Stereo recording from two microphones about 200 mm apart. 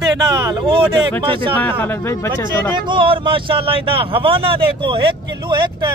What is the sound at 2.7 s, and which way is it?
Speech, 25° right (ahead or behind).